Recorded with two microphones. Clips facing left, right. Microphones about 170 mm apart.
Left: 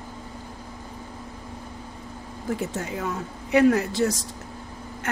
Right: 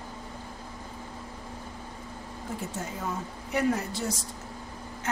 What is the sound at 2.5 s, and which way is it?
Speech, 85° left.